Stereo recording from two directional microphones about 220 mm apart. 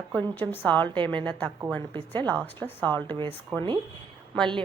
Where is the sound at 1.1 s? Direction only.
5° left (ahead or behind).